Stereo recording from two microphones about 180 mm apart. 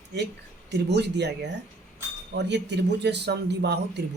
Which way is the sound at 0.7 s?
70° right (ahead or behind).